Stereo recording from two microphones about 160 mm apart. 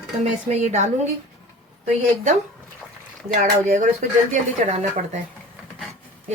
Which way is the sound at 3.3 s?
55° right (ahead or behind).